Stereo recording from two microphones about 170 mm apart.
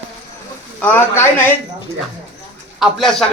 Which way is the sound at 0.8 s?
10° left (ahead or behind).